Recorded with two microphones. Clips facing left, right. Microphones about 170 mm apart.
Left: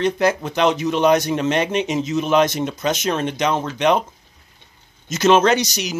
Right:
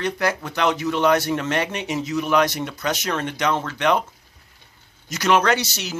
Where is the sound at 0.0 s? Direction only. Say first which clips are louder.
Left 5 dB; 20° left (ahead or behind).